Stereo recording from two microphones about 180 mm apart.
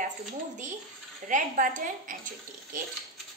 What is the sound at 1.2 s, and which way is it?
A woman's voice, 45° right (ahead or behind).